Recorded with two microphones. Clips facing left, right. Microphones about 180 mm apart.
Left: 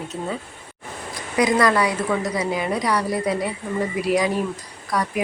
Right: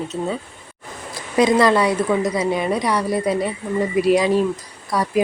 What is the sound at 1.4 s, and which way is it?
A woman's voice, 25° right (ahead or behind).